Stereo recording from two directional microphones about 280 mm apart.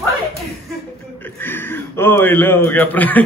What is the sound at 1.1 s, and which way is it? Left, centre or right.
A man's voice, centre.